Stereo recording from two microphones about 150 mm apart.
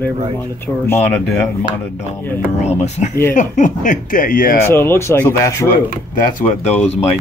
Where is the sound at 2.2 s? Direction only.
15° left (ahead or behind).